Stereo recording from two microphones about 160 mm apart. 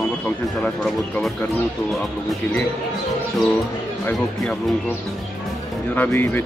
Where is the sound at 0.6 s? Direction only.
Centre (ahead or behind).